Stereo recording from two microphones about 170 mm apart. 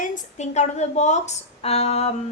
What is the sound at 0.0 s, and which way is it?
A woman's voice, 45° left (ahead or behind).